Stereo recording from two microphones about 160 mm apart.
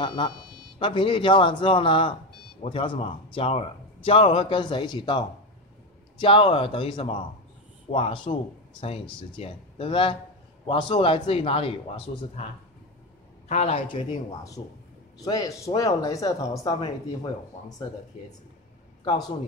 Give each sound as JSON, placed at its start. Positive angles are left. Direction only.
{"t": 0.0, "sound": "a man's voice", "side_deg": 30}
{"t": 9.4, "sound": "a man's voice", "side_deg": 35}
{"t": 13.5, "sound": "a man's voice", "side_deg": 45}
{"t": 15.1, "sound": "speech", "side_deg": 20}